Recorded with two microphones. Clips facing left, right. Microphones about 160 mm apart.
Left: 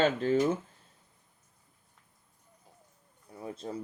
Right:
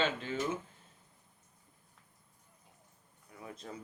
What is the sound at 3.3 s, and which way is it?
Speech, 30° left (ahead or behind).